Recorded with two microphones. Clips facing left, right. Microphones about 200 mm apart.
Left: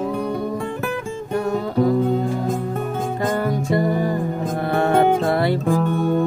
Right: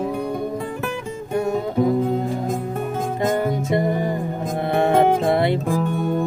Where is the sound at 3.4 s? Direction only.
20° right (ahead or behind).